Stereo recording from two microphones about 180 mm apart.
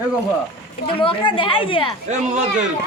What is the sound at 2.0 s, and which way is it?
Speech, 40° right (ahead or behind).